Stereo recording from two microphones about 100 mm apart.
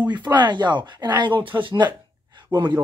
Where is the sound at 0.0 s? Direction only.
45° right (ahead or behind).